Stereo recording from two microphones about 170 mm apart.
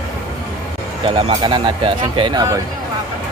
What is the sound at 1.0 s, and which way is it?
Speech, 30° right (ahead or behind).